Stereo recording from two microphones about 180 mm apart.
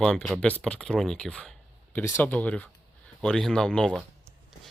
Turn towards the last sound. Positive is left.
turn(degrees=5)  # may be behind; listen again after turning